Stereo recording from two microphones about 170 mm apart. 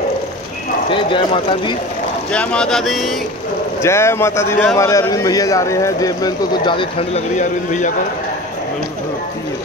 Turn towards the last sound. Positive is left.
turn(degrees=45)  # may be behind; listen again after turning